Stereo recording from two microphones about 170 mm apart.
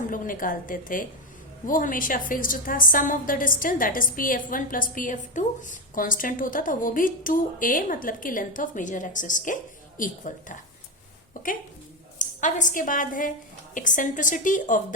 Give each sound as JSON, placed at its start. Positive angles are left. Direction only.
{"t": 0.1, "sound": "a woman's voice", "side_deg": 55}